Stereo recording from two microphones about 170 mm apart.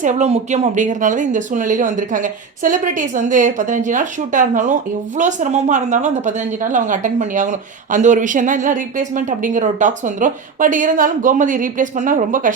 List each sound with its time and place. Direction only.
0.0 s speech: 45° right (ahead or behind)